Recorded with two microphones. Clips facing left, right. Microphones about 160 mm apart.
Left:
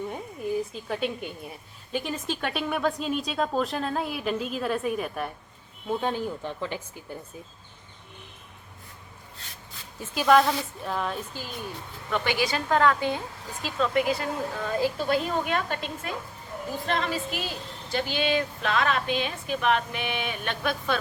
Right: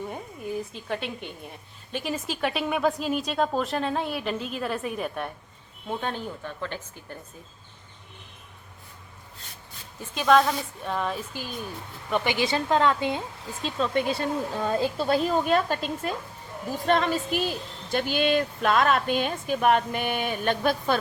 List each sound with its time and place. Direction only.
0.1 s a woman's voice: centre (ahead or behind)
10.0 s speech: 5° left (ahead or behind)
12.1 s speech: 15° right (ahead or behind); by 15.8 s 35° right (ahead or behind)
16.8 s speech: 45° right (ahead or behind)